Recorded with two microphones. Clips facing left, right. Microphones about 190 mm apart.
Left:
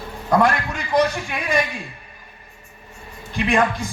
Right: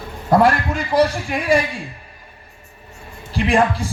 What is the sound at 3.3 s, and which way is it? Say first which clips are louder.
Speech: right 2 dB; 30° right (ahead or behind).